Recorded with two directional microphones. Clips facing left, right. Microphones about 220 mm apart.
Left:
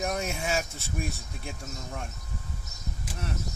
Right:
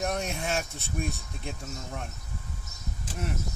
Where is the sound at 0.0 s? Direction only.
Centre (ahead or behind).